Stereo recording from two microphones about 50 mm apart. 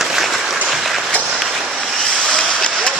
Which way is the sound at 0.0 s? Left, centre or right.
Centre.